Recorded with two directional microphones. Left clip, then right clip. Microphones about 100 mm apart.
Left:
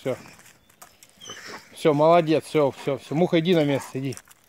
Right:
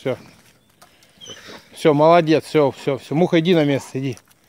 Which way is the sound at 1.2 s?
20° right (ahead or behind).